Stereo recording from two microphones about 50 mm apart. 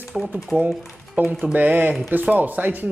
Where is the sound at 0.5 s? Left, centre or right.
Right.